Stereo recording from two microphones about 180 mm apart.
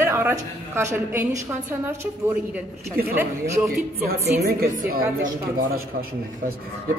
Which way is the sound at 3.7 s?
60° right (ahead or behind).